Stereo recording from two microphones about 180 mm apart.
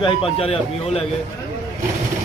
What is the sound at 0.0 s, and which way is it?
A man's voice, 30° left (ahead or behind).